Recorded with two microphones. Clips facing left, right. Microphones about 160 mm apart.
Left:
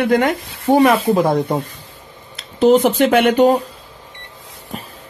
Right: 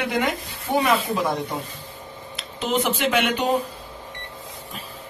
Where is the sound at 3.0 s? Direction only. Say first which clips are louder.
Left 10 dB; 45° left (ahead or behind).